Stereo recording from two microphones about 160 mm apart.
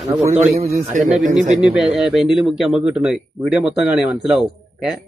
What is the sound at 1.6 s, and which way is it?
Speech, 5° right (ahead or behind).